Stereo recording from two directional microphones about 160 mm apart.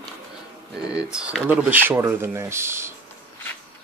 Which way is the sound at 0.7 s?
5° right (ahead or behind).